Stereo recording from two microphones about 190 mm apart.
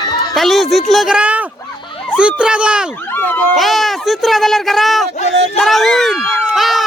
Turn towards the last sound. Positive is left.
turn(degrees=0)  # may be behind; listen again after turning